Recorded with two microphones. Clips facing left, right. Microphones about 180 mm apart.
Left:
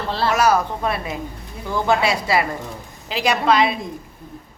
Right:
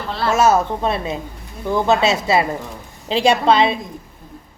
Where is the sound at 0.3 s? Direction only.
25° right (ahead or behind).